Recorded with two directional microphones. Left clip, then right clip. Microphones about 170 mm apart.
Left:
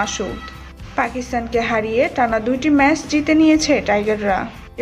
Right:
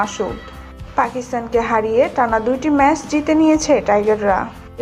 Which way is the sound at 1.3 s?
15° left (ahead or behind).